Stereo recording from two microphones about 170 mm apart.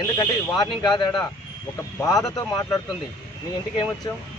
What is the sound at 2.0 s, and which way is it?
Speech, 20° left (ahead or behind).